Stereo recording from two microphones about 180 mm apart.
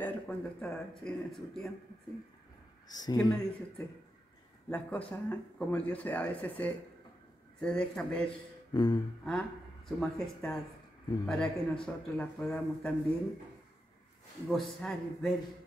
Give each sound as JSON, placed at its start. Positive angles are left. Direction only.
{"t": 0.0, "sound": "speech", "side_deg": 5}
{"t": 2.9, "sound": "speech", "side_deg": 20}
{"t": 4.6, "sound": "speech", "side_deg": 5}
{"t": 8.7, "sound": "speech", "side_deg": 25}
{"t": 9.2, "sound": "speech", "side_deg": 5}
{"t": 14.5, "sound": "speech", "side_deg": 0}